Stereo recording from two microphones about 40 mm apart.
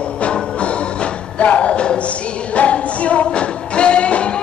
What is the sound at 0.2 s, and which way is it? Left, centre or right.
Music, left.